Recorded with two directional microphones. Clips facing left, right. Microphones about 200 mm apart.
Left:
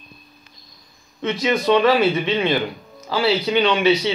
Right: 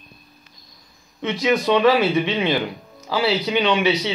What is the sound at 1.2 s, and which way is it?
Speech, 15° right (ahead or behind).